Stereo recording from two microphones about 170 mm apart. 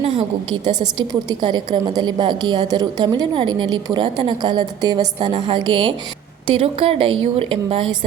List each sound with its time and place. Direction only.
0.0 s a woman's voice: 35° right (ahead or behind)